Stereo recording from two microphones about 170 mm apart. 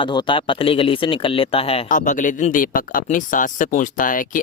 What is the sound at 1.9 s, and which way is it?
Speech, 50° left (ahead or behind).